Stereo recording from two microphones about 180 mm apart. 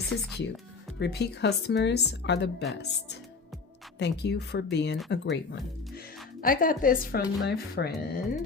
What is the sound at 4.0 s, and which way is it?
Speech, 70° left (ahead or behind).